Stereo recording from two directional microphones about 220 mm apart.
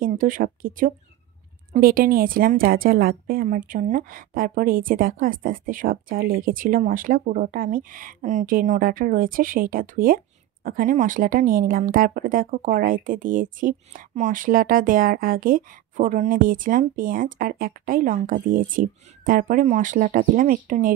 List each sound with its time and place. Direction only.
0.0 s a woman's voice: 40° right (ahead or behind)